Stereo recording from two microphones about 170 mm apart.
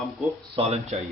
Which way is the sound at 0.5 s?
35° right (ahead or behind).